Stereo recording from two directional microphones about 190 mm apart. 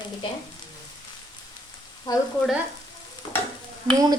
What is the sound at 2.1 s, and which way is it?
Frying, 20° left (ahead or behind).